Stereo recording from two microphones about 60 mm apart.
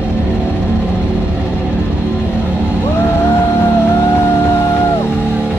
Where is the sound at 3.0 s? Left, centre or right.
Left.